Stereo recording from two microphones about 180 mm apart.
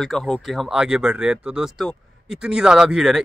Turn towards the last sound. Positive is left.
turn(degrees=0)  # may be behind; listen again after turning